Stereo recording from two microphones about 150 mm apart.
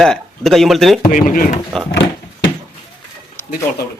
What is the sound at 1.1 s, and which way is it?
Speech, 65° left (ahead or behind).